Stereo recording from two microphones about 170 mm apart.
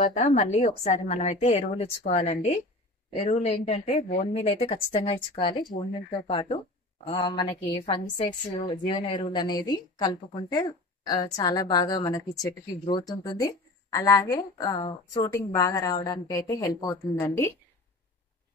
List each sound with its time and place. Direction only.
0.0 s a woman's voice: 50° left (ahead or behind); by 7.5 s 25° left (ahead or behind)
8.6 s a woman's voice: 25° left (ahead or behind)